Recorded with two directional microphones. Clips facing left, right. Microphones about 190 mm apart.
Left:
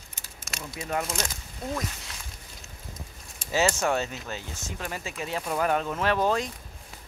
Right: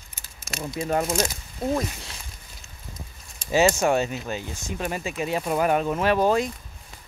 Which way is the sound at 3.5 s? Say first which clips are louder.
Right 5 dB; 15° right (ahead or behind).